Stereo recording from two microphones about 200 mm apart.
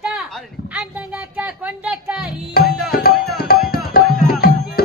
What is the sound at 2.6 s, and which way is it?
Tabla, 50° left (ahead or behind).